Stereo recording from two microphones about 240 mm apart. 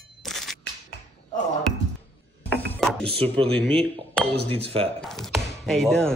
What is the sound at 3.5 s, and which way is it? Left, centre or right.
Speech, centre.